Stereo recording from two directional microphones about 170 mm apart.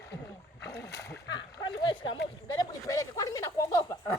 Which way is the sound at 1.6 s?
30° left (ahead or behind).